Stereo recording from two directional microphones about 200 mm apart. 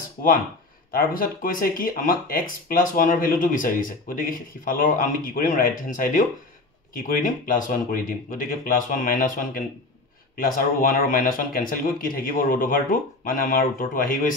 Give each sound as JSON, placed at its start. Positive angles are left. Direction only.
{"t": 0.9, "sound": "speech", "side_deg": 45}